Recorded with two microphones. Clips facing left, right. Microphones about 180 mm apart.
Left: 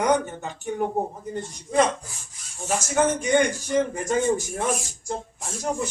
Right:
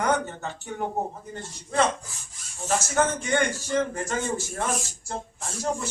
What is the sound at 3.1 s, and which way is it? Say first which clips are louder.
Speech: left 4 dB; 15° left (ahead or behind).